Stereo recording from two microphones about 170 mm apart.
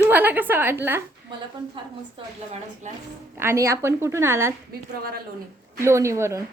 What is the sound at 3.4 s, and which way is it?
A woman's voice, 15° right (ahead or behind).